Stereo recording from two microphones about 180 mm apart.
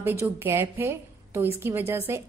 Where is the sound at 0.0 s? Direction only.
15° right (ahead or behind).